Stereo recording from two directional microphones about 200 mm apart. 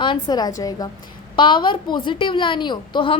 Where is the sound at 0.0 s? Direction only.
20° left (ahead or behind).